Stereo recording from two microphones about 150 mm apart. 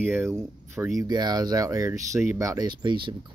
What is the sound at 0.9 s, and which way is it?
Speech, 30° right (ahead or behind).